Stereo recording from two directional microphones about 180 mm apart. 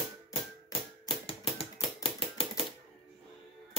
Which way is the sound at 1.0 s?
30° left (ahead or behind).